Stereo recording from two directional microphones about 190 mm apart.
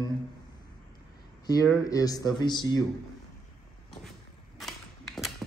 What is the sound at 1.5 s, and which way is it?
Speech, 15° left (ahead or behind).